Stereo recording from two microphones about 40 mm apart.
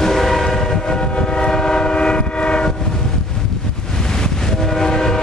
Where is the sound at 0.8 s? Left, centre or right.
Centre.